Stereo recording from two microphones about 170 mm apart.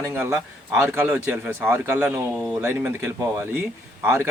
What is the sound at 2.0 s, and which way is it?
Speech, 10° right (ahead or behind).